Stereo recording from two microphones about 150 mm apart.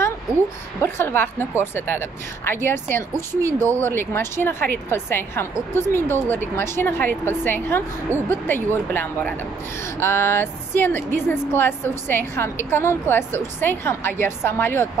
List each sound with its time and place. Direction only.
0.7 s speech: 15° left (ahead or behind)